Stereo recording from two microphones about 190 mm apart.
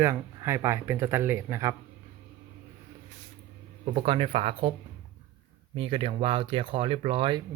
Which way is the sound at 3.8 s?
30° right (ahead or behind).